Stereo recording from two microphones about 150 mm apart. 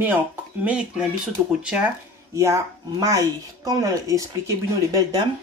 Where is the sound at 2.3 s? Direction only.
20° right (ahead or behind).